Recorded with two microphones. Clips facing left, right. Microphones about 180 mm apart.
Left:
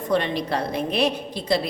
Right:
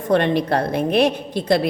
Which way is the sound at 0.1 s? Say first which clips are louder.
Right 6 dB; 55° right (ahead or behind).